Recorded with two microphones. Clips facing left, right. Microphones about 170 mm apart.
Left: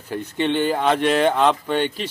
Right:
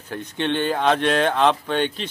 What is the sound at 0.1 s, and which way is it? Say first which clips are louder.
A man's voice: left 2 dB; 10° left (ahead or behind).